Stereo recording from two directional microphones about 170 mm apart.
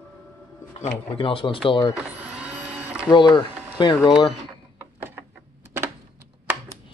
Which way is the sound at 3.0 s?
25° left (ahead or behind).